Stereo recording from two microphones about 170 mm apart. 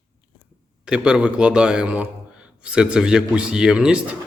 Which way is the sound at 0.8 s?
5° right (ahead or behind).